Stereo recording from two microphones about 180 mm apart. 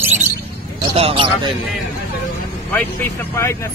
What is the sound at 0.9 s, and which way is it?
Speech, 30° right (ahead or behind).